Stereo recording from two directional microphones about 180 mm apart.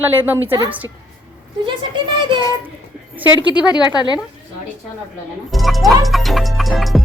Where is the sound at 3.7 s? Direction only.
25° left (ahead or behind).